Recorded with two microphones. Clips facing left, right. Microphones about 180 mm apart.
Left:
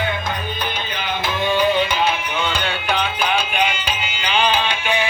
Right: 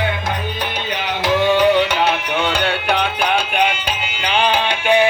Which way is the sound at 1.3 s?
75° right (ahead or behind).